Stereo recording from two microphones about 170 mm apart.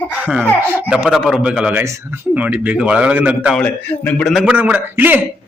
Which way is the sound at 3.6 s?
5° left (ahead or behind).